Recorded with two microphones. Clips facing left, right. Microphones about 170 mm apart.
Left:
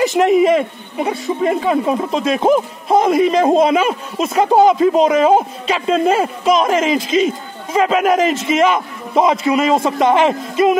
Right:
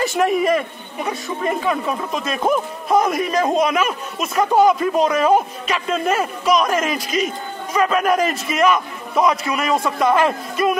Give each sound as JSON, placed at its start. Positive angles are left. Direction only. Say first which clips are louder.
{"t": 0.0, "sound": "speech", "louder": "left 6 dB", "side_deg": 20}